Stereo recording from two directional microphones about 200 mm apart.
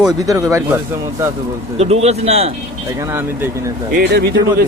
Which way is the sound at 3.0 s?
10° right (ahead or behind).